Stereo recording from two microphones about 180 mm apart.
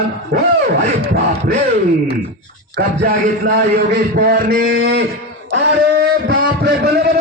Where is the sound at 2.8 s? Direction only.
55° right (ahead or behind).